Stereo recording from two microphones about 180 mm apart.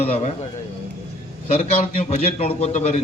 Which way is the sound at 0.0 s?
35° left (ahead or behind).